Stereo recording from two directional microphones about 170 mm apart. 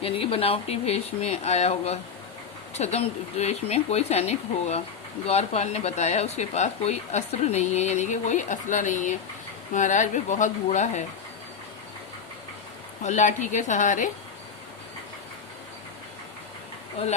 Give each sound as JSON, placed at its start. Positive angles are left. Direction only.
{"t": 0.0, "sound": "speech", "side_deg": 35}
{"t": 13.0, "sound": "speech", "side_deg": 45}